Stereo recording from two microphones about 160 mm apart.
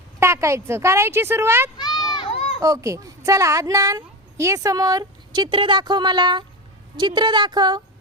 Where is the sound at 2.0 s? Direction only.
30° left (ahead or behind).